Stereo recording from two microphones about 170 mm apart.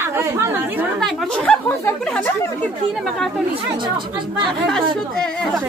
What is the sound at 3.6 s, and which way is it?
Speech, 25° right (ahead or behind).